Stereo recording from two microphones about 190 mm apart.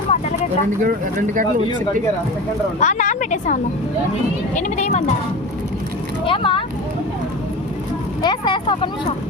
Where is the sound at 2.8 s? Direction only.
40° left (ahead or behind).